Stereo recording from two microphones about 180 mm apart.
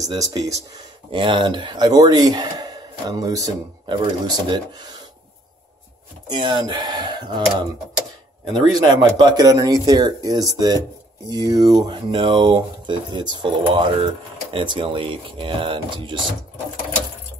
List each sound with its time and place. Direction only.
0.0 s speech: 20° right (ahead or behind)
6.2 s speech: 25° right (ahead or behind)